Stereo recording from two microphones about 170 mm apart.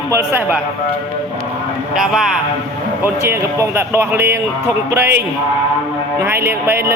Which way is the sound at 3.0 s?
15° right (ahead or behind).